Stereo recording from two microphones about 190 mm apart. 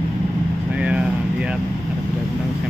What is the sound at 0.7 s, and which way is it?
Air conditioning, 5° right (ahead or behind).